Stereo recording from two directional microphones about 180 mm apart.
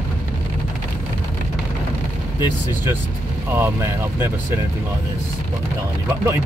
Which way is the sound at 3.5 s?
15° right (ahead or behind).